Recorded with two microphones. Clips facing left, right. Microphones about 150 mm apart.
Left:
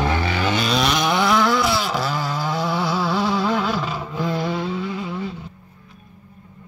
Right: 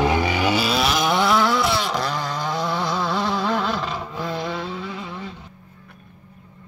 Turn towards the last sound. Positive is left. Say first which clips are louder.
# left 5 dB
turn(degrees=5)  # may be behind; listen again after turning